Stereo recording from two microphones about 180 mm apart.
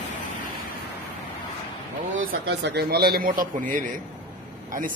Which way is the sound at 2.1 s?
70° right (ahead or behind).